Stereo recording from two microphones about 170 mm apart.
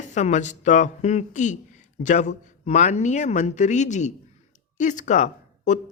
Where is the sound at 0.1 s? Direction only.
45° left (ahead or behind).